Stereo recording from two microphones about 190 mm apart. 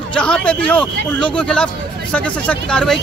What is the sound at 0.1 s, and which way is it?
Speech, 5° left (ahead or behind).